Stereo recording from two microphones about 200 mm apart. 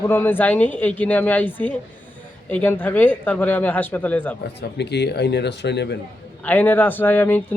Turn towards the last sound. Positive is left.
turn(degrees=10)  # may be behind; listen again after turning